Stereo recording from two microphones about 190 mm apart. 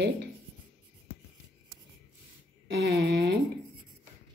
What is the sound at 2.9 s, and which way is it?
Speech, 55° right (ahead or behind).